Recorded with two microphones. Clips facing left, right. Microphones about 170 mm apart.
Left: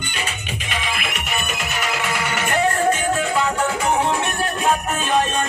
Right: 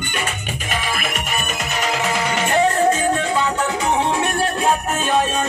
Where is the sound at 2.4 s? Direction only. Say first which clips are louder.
Right 4 dB; 30° right (ahead or behind).